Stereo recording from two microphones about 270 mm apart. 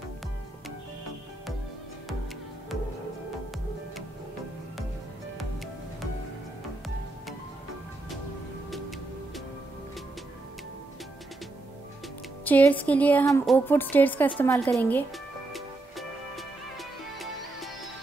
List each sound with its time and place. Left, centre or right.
12.4 s a woman's voice: centre
15.5 s music: centre